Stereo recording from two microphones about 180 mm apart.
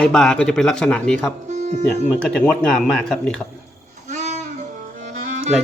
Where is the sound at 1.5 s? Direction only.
40° right (ahead or behind).